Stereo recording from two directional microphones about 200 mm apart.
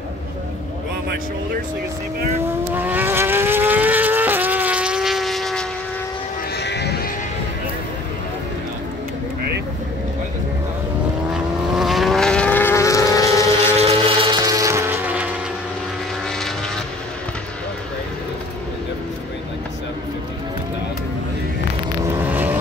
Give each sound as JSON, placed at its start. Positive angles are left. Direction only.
{"t": 2.7, "sound": "vehicle", "side_deg": -10}
{"t": 6.5, "sound": "sheep", "side_deg": 55}
{"t": 11.3, "sound": "vehicle", "side_deg": 0}
{"t": 13.7, "sound": "vehicle", "side_deg": -30}
{"t": 16.3, "sound": "vehicle", "side_deg": 0}
{"t": 22.0, "sound": "vehicle", "side_deg": -10}